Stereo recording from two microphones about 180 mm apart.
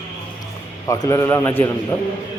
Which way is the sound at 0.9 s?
15° left (ahead or behind).